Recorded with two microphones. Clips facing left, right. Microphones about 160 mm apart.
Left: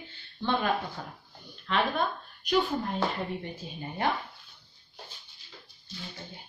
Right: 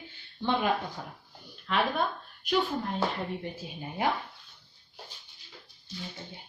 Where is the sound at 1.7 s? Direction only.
5° right (ahead or behind).